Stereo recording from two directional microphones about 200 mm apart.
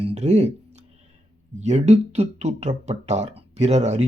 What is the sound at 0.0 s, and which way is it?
Speech, 30° right (ahead or behind).